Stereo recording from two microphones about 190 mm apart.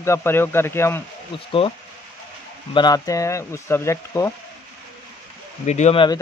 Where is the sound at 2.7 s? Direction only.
20° left (ahead or behind).